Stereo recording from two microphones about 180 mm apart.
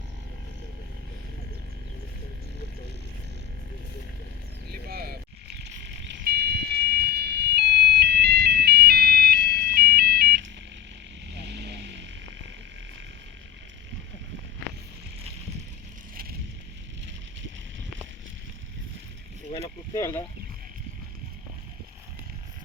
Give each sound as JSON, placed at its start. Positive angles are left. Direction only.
{"t": 4.7, "sound": "a sound", "side_deg": -60}
{"t": 11.3, "sound": "vehicle", "side_deg": -70}
{"t": 19.9, "sound": "speech", "side_deg": 15}